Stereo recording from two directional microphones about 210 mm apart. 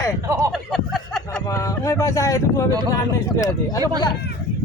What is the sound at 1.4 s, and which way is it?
Speech, 15° left (ahead or behind).